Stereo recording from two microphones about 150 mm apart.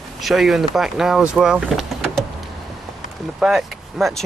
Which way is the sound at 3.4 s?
Centre (ahead or behind).